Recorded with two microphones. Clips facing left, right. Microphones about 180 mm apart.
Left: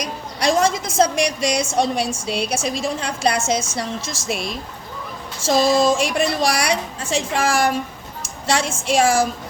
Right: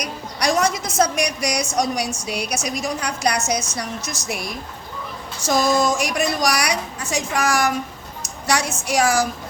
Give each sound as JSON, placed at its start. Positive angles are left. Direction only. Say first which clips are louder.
{"t": 0.0, "sound": "a woman's voice", "louder": "left 2 dB", "side_deg": 25}
{"t": 8.2, "sound": "a sound", "louder": "left 1 dB", "side_deg": 25}
{"t": 8.9, "sound": "a woman's voice", "louder": "left 2 dB", "side_deg": 25}